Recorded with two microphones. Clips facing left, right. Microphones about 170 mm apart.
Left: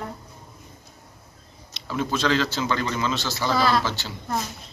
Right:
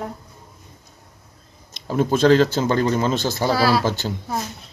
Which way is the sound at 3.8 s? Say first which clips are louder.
Right 7 dB; 50° right (ahead or behind).